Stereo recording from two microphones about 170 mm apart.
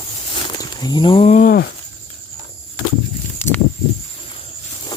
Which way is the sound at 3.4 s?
10° left (ahead or behind).